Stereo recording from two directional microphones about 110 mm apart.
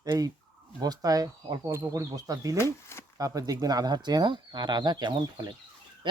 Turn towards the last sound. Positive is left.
turn(degrees=-40)  # may be behind; listen again after turning